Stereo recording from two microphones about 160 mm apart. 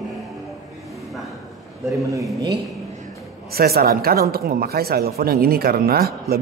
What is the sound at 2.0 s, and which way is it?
Speech, 20° right (ahead or behind).